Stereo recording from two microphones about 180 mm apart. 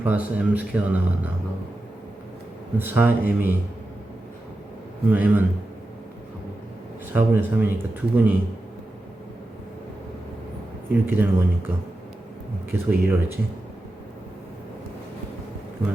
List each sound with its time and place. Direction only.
0.0 s speech: 10° right (ahead or behind)
2.7 s speech: 10° right (ahead or behind)
5.0 s speech: 10° right (ahead or behind)
7.1 s speech: 10° right (ahead or behind)
11.0 s speech: 10° right (ahead or behind)
12.7 s speech: 10° right (ahead or behind)